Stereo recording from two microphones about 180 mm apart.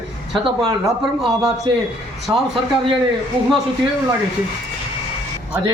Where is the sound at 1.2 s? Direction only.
Centre (ahead or behind).